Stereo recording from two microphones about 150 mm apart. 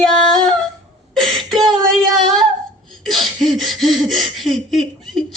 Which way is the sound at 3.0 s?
Centre (ahead or behind).